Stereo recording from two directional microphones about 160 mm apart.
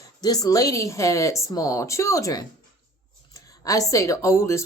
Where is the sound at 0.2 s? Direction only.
25° left (ahead or behind).